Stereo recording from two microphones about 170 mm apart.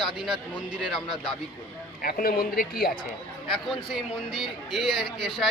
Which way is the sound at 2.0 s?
60° left (ahead or behind).